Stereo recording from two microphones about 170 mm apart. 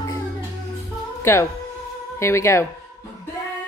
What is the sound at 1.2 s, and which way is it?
Speech, 15° left (ahead or behind).